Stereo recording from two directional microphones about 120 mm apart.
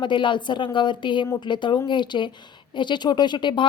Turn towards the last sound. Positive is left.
turn(degrees=40)  # may be behind; listen again after turning